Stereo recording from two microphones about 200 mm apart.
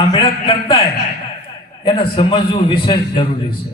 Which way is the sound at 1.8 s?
25° left (ahead or behind).